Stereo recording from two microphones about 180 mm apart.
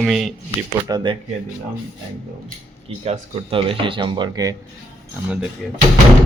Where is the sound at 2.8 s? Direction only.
35° right (ahead or behind).